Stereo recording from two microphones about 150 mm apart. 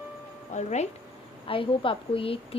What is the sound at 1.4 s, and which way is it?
Speech, 35° left (ahead or behind).